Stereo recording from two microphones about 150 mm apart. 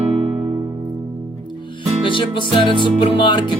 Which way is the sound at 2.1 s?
35° left (ahead or behind).